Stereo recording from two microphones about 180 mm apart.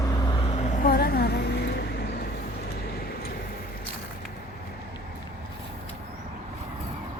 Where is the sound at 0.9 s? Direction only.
60° left (ahead or behind).